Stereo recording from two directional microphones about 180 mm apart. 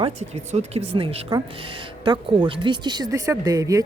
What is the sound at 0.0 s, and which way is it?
Speech, 35° right (ahead or behind).